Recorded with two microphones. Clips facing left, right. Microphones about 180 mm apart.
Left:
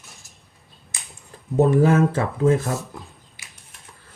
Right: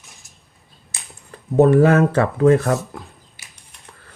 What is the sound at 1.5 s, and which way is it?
Speech, 65° right (ahead or behind).